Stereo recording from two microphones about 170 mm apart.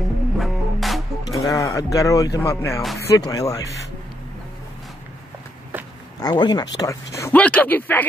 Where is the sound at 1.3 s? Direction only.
20° left (ahead or behind).